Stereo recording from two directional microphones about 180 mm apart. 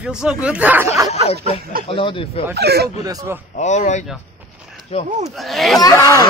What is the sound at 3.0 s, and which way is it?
Speech, 15° right (ahead or behind).